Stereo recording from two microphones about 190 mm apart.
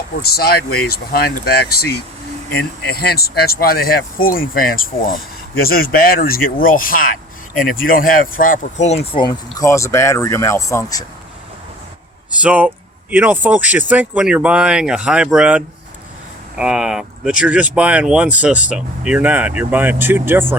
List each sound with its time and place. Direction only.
0.2 s speech: 55° left (ahead or behind)
9.1 s speech: 25° left (ahead or behind)
12.3 s speech: 5° right (ahead or behind)